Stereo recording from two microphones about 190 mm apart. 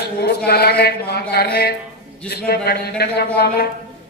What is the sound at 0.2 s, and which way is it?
A man's voice, 55° left (ahead or behind).